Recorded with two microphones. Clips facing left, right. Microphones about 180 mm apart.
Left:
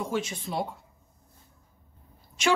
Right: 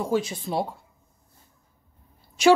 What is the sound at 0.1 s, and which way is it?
Speech, 35° right (ahead or behind).